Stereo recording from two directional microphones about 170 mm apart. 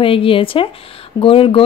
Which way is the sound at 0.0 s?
30° left (ahead or behind).